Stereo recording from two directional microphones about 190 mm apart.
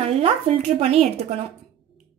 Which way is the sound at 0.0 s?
30° right (ahead or behind).